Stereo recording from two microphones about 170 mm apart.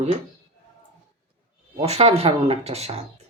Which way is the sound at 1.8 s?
35° right (ahead or behind).